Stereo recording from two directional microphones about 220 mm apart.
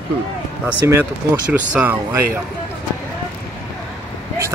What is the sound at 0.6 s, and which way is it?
Speech, 10° right (ahead or behind).